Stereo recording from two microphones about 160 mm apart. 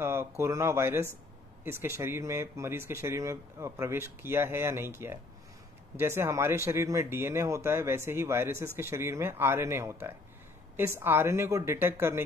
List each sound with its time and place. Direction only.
0.0 s speech: 15° right (ahead or behind)